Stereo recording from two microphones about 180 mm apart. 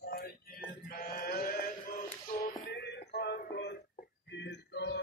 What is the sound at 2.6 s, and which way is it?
Music, 70° left (ahead or behind).